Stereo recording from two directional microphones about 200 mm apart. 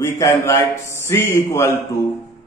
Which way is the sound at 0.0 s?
15° left (ahead or behind).